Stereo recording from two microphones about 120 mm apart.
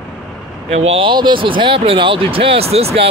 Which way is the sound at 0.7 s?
60° right (ahead or behind).